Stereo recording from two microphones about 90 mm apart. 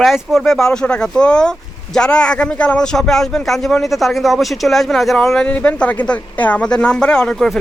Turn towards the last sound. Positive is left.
turn(degrees=5)  # may be behind; listen again after turning